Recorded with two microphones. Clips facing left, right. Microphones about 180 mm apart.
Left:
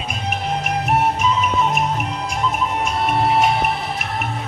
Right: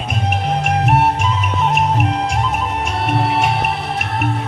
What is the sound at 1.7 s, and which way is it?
Music, 80° right.